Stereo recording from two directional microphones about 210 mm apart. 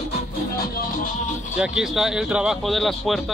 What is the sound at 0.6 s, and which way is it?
Music, 45° left (ahead or behind).